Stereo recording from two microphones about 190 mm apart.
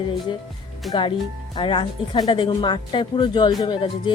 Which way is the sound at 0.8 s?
Centre (ahead or behind).